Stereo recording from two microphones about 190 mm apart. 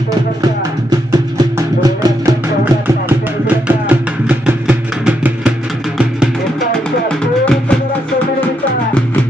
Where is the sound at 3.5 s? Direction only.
5° right (ahead or behind).